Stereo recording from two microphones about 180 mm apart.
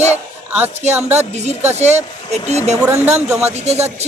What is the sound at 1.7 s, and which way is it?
Speech, 40° right (ahead or behind).